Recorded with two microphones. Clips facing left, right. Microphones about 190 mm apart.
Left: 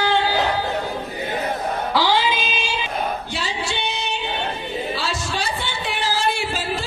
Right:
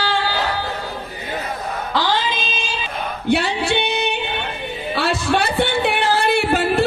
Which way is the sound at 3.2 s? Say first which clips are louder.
Right 9 dB; 60° right (ahead or behind).